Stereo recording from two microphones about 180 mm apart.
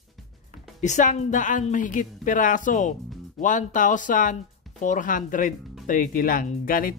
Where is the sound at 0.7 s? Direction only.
40° left (ahead or behind).